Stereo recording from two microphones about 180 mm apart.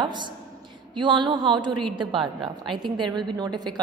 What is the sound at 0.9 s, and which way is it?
A woman's voice, 25° right (ahead or behind).